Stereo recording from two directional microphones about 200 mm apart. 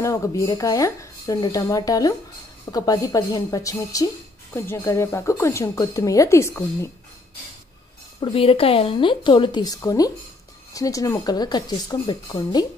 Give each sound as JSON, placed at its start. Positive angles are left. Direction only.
{"t": 0.0, "sound": "speech", "side_deg": 15}
{"t": 8.2, "sound": "a woman's voice", "side_deg": 30}